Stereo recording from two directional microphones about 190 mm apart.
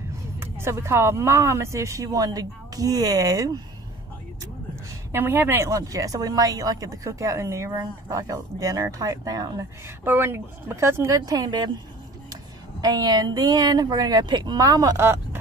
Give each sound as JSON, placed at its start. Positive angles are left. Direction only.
{"t": 0.4, "sound": "speech", "side_deg": -15}
{"t": 5.1, "sound": "speech", "side_deg": -10}
{"t": 12.8, "sound": "speech", "side_deg": -20}